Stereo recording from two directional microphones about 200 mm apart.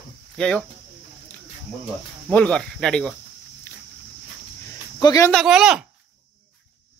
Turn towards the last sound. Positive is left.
turn(degrees=-5)  # may be behind; listen again after turning